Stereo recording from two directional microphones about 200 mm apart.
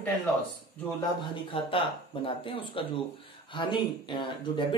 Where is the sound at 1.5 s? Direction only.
25° left (ahead or behind).